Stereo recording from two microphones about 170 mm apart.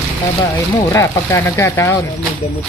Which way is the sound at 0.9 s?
15° left (ahead or behind).